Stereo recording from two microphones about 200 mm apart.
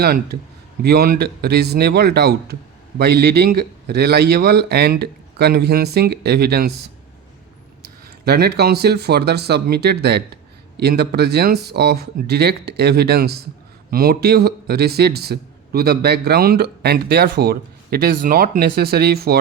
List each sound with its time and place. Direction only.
0.0 s a man's voice: 50° right (ahead or behind)
8.2 s a man's voice: 55° right (ahead or behind)